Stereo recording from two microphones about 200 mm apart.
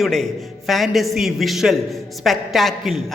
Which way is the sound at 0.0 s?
Centre (ahead or behind).